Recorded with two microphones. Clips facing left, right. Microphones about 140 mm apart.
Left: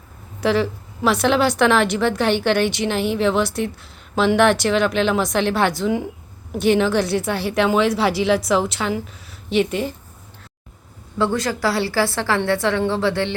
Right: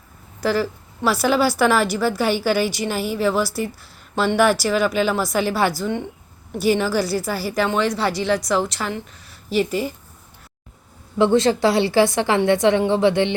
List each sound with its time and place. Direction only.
0.4 s a woman's voice: centre (ahead or behind)
11.2 s a woman's voice: 25° right (ahead or behind)